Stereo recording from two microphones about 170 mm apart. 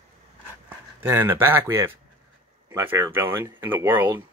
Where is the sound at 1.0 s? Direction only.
15° right (ahead or behind).